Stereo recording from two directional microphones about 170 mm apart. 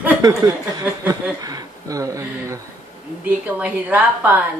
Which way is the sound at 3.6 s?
10° right (ahead or behind).